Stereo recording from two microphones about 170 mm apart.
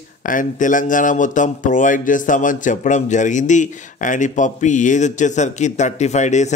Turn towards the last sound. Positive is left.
turn(degrees=45)  # may be behind; listen again after turning